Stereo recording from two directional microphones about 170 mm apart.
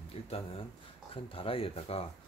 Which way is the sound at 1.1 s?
30° left (ahead or behind).